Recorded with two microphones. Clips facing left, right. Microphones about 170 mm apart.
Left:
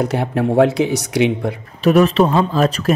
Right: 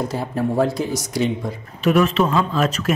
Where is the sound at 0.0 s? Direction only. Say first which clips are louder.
Left 4 dB; 70° left (ahead or behind).